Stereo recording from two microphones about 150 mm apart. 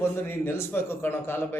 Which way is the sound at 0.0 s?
15° left (ahead or behind).